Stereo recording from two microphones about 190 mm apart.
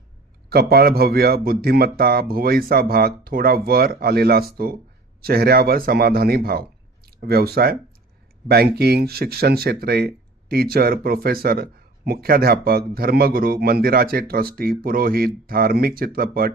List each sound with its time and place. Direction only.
0.5 s speech: 55° right (ahead or behind)